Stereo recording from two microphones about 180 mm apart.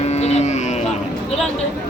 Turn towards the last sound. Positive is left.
turn(degrees=40)  # may be behind; listen again after turning